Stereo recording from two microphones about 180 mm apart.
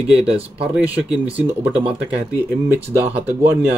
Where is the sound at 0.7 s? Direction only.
10° right (ahead or behind).